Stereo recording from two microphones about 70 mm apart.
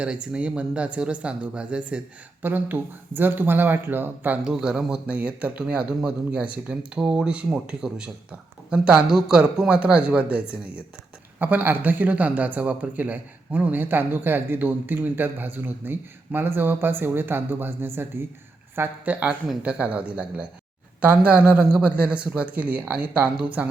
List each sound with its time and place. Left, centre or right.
0.0 s speech: centre
2.4 s a man's voice: right
4.4 s a man's voice: centre; by 18.3 s right
18.8 s a man's voice: right